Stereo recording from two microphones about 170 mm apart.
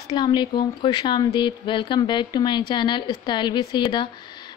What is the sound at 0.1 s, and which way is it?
A woman's voice, 25° left (ahead or behind).